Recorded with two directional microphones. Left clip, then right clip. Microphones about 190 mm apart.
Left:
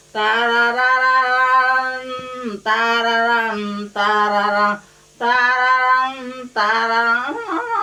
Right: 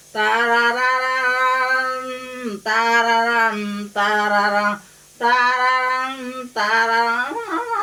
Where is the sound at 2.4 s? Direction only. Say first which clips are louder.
Left 1 dB; 15° right (ahead or behind).